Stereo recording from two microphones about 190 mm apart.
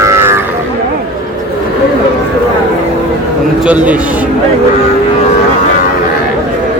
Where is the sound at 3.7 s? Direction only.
10° right (ahead or behind).